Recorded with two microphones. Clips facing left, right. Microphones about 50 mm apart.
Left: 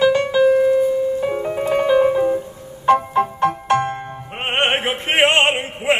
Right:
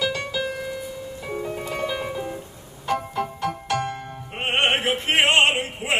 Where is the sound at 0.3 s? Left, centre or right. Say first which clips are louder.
Left 15 dB; left.